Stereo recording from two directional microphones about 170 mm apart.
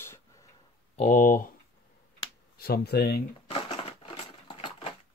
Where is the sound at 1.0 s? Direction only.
50° left (ahead or behind).